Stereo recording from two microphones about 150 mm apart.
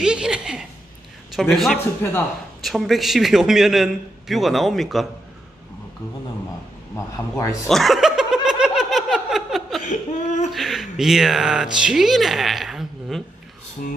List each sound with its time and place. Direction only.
0.0 s speech: 5° right (ahead or behind)
2.0 s speech: 15° left (ahead or behind)
2.6 s speech: centre (ahead or behind)
7.6 s snicker: centre (ahead or behind)
9.8 s a sound: 55° left (ahead or behind)
10.5 s speech: centre (ahead or behind)